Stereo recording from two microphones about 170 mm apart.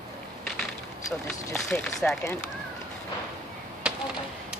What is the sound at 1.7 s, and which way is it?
Speech, 5° left (ahead or behind).